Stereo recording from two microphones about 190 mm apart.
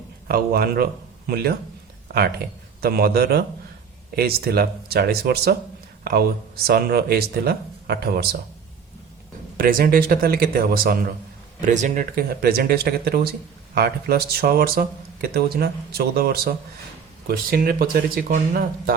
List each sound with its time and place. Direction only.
0.3 s speech: 50° right (ahead or behind)
2.8 s speech: 55° right (ahead or behind)
6.7 s speech: 55° right (ahead or behind)
9.6 s speech: 50° right (ahead or behind)
11.6 s speech: 40° right (ahead or behind)